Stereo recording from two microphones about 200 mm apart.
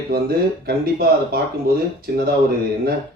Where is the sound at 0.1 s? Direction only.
45° right (ahead or behind).